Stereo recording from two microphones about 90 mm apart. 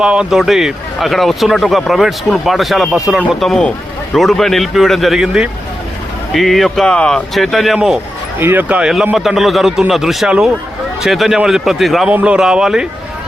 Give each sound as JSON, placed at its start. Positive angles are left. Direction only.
{"t": 0.0, "sound": "speech", "side_deg": -10}
{"t": 2.9, "sound": "speech", "side_deg": -15}
{"t": 3.4, "sound": "speech", "side_deg": 5}
{"t": 8.4, "sound": "speech", "side_deg": -20}
{"t": 9.1, "sound": "speech", "side_deg": 0}
{"t": 12.1, "sound": "speech", "side_deg": -10}